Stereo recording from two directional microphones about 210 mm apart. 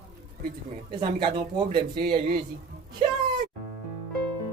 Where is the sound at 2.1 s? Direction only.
45° right (ahead or behind).